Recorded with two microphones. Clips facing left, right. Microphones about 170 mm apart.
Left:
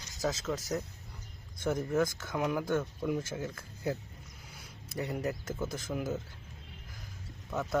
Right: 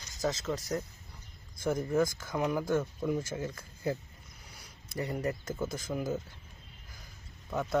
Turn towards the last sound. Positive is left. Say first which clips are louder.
# right 1 dB
turn(degrees=0)  # may be behind; listen again after turning